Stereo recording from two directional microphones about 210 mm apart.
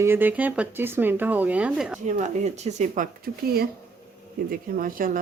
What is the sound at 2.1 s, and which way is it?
Speech, 35° right (ahead or behind).